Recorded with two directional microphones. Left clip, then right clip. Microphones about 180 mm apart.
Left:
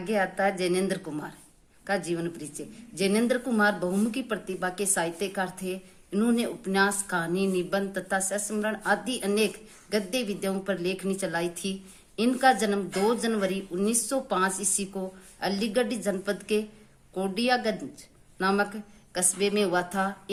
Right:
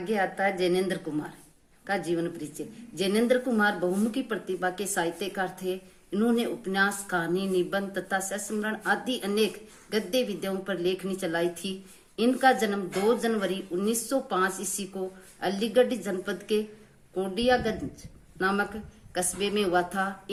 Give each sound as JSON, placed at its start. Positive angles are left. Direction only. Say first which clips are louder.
{"t": 0.0, "sound": "a woman's voice", "louder": "left 1 dB", "side_deg": 45}